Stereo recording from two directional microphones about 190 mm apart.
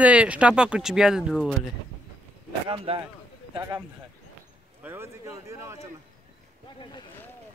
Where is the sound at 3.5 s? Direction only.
10° right (ahead or behind).